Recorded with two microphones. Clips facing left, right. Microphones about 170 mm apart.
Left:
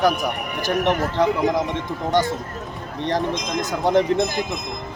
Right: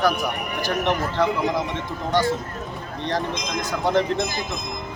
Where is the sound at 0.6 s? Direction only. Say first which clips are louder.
Left 3 dB; 15° left (ahead or behind).